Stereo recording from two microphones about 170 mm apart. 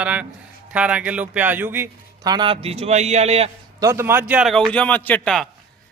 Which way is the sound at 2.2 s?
25° right (ahead or behind).